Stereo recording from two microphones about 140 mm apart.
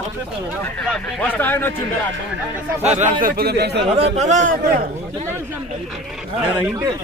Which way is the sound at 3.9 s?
50° right (ahead or behind).